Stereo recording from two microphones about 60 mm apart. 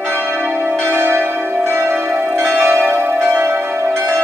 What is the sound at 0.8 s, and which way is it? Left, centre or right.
Change ringing, right.